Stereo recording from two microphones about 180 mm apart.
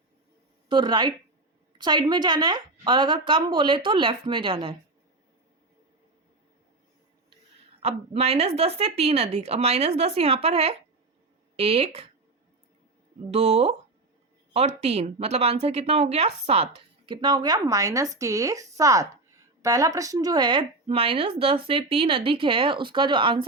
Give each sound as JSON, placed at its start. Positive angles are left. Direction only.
{"t": 0.7, "sound": "speech", "side_deg": -25}
{"t": 7.8, "sound": "speech", "side_deg": -35}
{"t": 13.3, "sound": "speech", "side_deg": -35}